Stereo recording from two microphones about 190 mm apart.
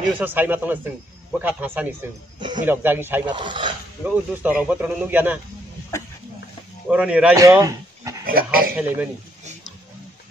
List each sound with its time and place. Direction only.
0.2 s a man's voice: 10° right (ahead or behind)
3.3 s speech: 25° right (ahead or behind)
4.0 s a man's voice: 10° right (ahead or behind)
6.9 s speech: 5° right (ahead or behind)
7.3 s speech: 15° right (ahead or behind)
8.3 s a man's voice: 50° right (ahead or behind)
8.7 s a man's voice: 10° right (ahead or behind)